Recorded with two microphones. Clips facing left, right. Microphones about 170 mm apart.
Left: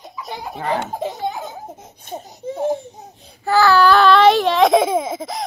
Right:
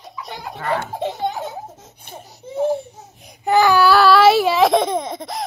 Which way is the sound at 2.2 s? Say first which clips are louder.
Right 1 dB; 15° left (ahead or behind).